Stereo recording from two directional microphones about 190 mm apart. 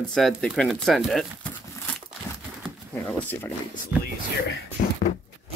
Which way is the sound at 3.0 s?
10° left (ahead or behind).